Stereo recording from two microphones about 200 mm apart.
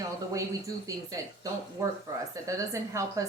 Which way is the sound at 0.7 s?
15° right (ahead or behind).